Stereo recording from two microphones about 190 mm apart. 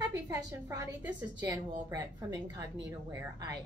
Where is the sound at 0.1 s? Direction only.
20° right (ahead or behind).